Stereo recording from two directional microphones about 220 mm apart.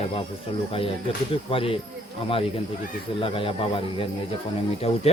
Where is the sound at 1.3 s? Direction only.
25° left (ahead or behind).